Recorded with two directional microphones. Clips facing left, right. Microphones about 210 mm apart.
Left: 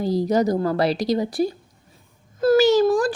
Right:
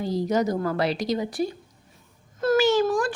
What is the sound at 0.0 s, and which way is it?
A child's voice, 35° left (ahead or behind).